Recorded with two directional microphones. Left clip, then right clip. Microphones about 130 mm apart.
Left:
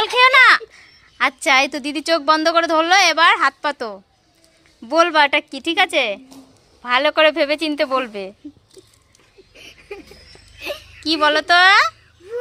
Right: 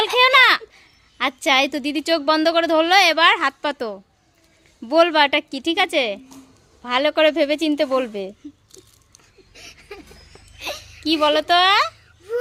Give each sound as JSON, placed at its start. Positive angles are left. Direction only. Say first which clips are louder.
{"t": 0.0, "sound": "a child's voice", "louder": "left 2 dB", "side_deg": -30}
{"t": 9.6, "sound": "a sound", "louder": "left 3 dB", "side_deg": -40}
{"t": 11.0, "sound": "speech", "louder": "left 1 dB", "side_deg": -20}